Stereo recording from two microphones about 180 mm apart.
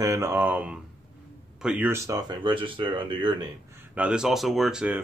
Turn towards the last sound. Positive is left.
turn(degrees=-5)  # may be behind; listen again after turning